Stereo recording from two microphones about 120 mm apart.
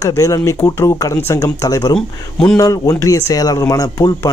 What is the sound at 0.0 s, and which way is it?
A man's voice, 25° left (ahead or behind).